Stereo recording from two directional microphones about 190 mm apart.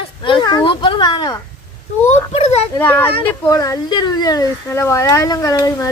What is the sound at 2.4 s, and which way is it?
Speech, 35° left (ahead or behind).